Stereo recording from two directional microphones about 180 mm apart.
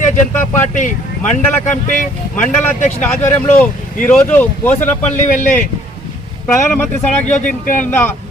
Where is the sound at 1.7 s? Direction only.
45° left (ahead or behind).